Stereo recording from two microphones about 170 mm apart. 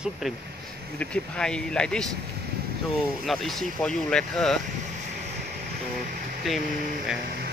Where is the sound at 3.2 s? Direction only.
Centre (ahead or behind).